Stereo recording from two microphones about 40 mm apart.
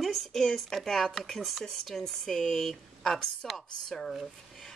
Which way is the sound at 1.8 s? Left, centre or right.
Centre.